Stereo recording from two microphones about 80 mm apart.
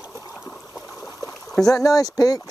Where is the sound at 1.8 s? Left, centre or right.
Left.